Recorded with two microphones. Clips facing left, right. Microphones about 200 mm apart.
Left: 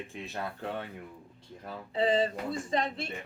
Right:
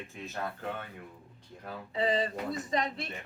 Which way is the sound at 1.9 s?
30° left (ahead or behind).